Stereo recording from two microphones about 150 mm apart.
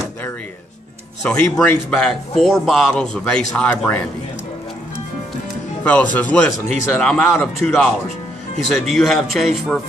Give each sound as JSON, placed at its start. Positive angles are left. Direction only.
{"t": 1.2, "sound": "speech", "side_deg": 5}
{"t": 5.9, "sound": "speech", "side_deg": 10}